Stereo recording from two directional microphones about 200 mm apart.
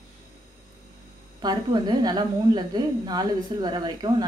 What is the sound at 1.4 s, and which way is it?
A woman's voice, 20° right (ahead or behind).